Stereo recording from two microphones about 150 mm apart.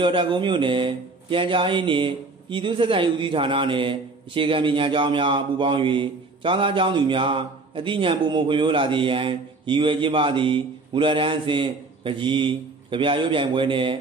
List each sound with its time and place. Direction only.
0.0 s speech: 30° right (ahead or behind)